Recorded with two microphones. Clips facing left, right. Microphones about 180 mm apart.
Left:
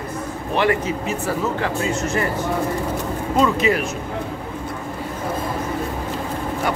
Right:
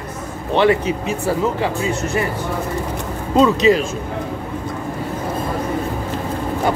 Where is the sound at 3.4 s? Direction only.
20° right (ahead or behind).